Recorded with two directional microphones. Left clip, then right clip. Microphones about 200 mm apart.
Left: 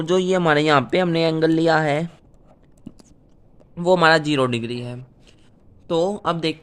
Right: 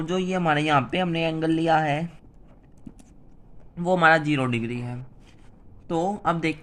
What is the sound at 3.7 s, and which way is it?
Speech, 55° left (ahead or behind).